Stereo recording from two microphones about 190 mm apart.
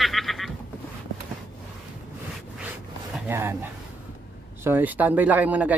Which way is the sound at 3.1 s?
10° right (ahead or behind).